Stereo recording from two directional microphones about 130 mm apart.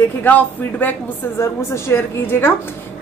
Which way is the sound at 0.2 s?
15° left (ahead or behind).